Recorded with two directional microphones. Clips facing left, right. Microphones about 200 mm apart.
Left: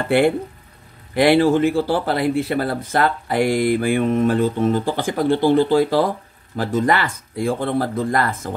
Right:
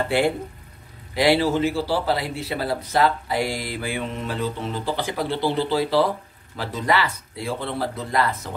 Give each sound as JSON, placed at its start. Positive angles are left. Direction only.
{"t": 1.1, "sound": "a man's voice", "side_deg": 55}